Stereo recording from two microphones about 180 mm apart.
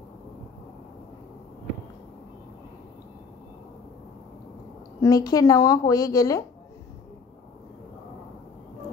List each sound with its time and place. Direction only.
5.0 s a woman's voice: 20° left (ahead or behind)